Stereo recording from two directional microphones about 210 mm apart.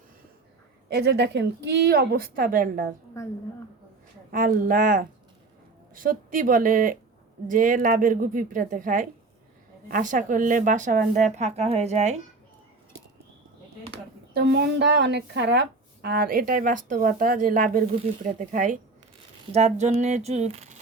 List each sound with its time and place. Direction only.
0.9 s speech: 50° right (ahead or behind)
4.3 s a woman's voice: 40° right (ahead or behind)
14.3 s a woman's voice: 50° right (ahead or behind); by 20.7 s 30° right (ahead or behind)